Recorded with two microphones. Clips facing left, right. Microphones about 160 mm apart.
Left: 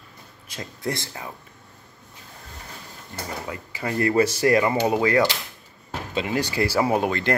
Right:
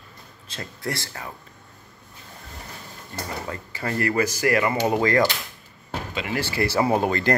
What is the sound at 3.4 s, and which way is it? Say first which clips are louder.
Speech: even; 10° left (ahead or behind).